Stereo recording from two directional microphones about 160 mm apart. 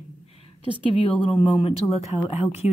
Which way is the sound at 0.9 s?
30° left (ahead or behind).